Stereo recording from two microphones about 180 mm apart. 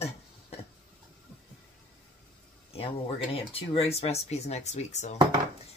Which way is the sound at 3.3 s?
30° left (ahead or behind).